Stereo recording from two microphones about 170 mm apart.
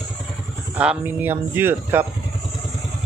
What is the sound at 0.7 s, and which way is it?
Speech, 10° right (ahead or behind).